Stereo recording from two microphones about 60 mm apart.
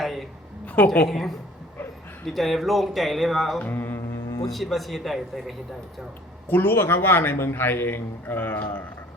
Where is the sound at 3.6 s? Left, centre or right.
Left.